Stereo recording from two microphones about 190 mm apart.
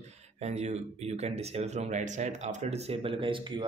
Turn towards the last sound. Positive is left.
turn(degrees=-25)  # may be behind; listen again after turning